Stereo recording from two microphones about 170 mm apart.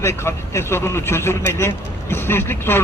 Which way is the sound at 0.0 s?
15° left (ahead or behind).